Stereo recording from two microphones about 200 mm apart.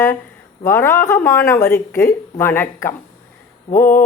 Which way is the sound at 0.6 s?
10° left (ahead or behind).